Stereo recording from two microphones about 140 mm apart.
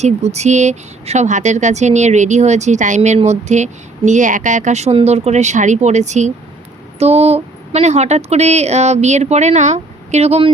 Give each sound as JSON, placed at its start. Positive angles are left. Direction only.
{"t": 0.0, "sound": "speech", "side_deg": -50}